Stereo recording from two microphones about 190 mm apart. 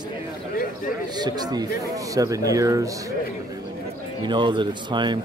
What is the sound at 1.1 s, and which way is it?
Speech, 20° right (ahead or behind).